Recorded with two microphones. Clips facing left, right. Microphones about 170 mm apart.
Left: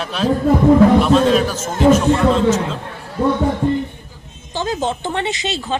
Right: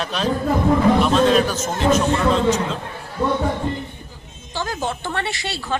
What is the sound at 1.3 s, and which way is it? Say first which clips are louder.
Speech: left 1 dB; 5° left (ahead or behind).